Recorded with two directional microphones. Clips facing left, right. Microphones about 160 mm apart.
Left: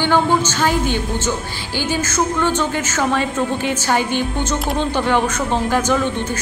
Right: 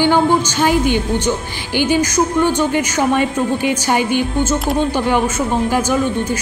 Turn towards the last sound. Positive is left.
turn(degrees=-10)  # may be behind; listen again after turning